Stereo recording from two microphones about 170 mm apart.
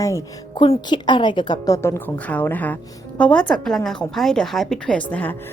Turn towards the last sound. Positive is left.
turn(degrees=10)  # may be behind; listen again after turning